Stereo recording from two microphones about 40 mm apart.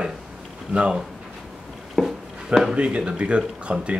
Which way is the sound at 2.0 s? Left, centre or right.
Centre.